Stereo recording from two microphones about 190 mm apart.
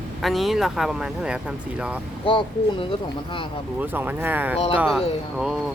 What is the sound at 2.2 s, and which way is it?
Speech, 25° left (ahead or behind).